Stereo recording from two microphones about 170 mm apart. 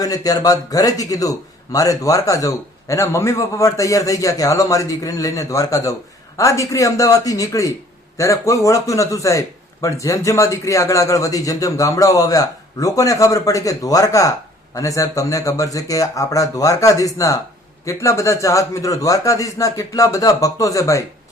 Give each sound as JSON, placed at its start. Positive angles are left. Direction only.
{"t": 0.0, "sound": "a man's voice", "side_deg": 20}